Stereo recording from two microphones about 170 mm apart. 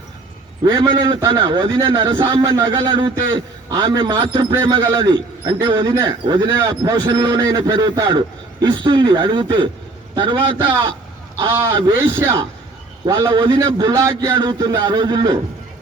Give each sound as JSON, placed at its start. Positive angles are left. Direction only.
{"t": 0.6, "sound": "a man's voice", "side_deg": -20}
{"t": 11.5, "sound": "a man's voice", "side_deg": -15}